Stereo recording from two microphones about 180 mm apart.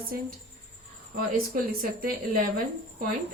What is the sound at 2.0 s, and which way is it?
Speech, 50° right (ahead or behind).